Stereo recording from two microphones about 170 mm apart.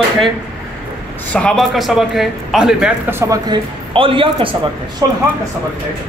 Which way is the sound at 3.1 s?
20° right (ahead or behind).